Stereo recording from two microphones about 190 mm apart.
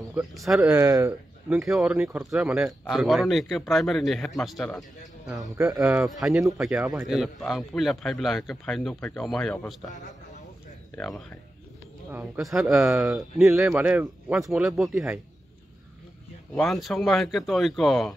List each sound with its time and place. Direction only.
0.1 s a man's voice: centre (ahead or behind)
0.7 s speech: 15° right (ahead or behind)
1.6 s a man's voice: centre (ahead or behind)
9.8 s speech: 40° left (ahead or behind)
11.0 s a man's voice: 5° left (ahead or behind)
12.1 s a man's voice: 15° right (ahead or behind)
16.5 s a man's voice: centre (ahead or behind)